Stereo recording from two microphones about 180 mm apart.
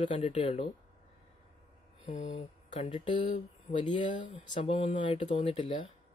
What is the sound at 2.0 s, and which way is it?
Speech, 30° left (ahead or behind).